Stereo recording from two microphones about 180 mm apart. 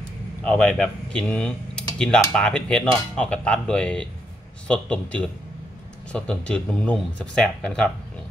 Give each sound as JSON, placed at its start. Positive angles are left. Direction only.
{"t": 0.4, "sound": "speech", "side_deg": 5}